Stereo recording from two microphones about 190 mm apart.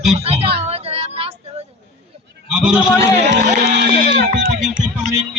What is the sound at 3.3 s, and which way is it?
Speech, 70° right (ahead or behind).